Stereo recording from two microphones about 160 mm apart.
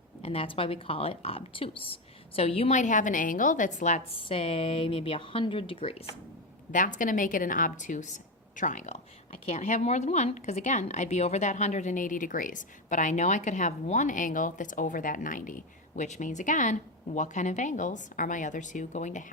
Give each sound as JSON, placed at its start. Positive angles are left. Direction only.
{"t": 0.2, "sound": "speech", "side_deg": 35}
{"t": 6.7, "sound": "a woman's voice", "side_deg": 55}